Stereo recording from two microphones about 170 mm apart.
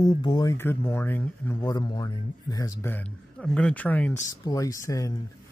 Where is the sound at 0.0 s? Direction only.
25° left (ahead or behind).